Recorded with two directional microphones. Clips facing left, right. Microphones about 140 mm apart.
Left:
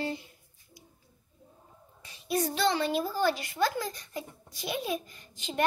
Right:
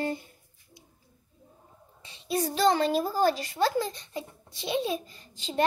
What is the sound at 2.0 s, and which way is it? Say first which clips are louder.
A child's voice: right 1 dB; 25° right (ahead or behind).